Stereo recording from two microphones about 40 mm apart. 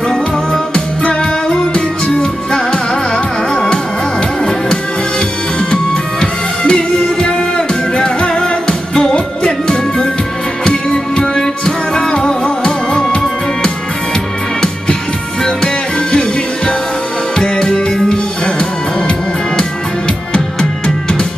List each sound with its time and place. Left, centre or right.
0.7 s music: left
4.4 s music: centre
15.4 s music: left